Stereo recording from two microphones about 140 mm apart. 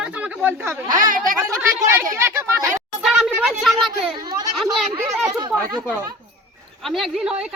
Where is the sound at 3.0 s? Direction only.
5° right (ahead or behind).